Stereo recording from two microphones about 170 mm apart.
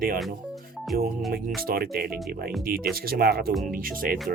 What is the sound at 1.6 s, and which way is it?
Speech, 60° right (ahead or behind).